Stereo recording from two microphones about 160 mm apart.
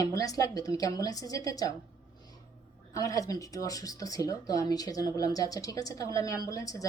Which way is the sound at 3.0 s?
20° left (ahead or behind).